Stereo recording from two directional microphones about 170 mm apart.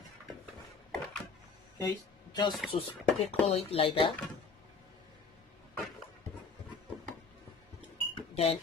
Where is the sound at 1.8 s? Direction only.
20° left (ahead or behind).